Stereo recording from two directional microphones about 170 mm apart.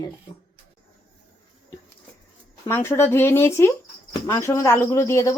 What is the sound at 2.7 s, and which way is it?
Speech, 15° left (ahead or behind).